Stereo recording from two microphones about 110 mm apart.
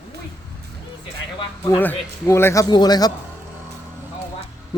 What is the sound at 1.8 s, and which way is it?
Speech, 20° left (ahead or behind).